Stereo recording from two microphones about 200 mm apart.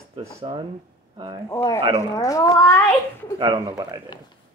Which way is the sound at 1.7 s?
30° right (ahead or behind).